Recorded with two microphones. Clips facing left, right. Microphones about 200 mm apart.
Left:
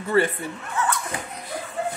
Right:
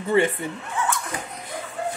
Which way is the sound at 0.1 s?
20° right (ahead or behind).